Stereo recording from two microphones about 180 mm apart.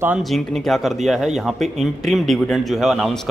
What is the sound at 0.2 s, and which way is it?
Speech, centre (ahead or behind).